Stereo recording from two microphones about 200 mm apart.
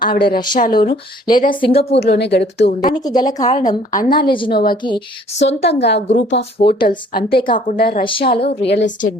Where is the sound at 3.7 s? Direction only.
45° left (ahead or behind).